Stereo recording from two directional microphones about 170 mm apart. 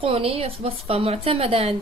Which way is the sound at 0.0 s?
35° right (ahead or behind).